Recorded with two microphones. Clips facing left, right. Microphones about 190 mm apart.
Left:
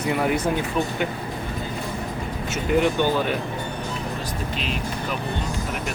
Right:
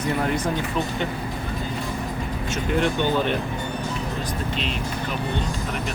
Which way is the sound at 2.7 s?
5° left (ahead or behind).